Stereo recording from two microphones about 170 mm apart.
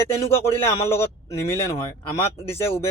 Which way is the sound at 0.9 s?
15° left (ahead or behind).